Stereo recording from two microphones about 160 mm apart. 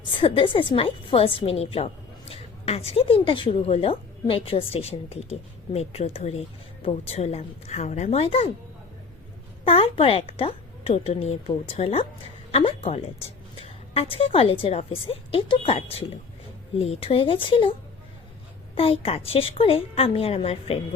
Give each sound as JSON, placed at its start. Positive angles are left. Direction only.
{"t": 0.0, "sound": "a woman's voice", "side_deg": 35}
{"t": 9.6, "sound": "a woman's voice", "side_deg": 35}